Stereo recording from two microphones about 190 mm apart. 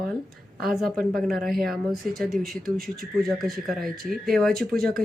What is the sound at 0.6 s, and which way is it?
Speech, centre (ahead or behind).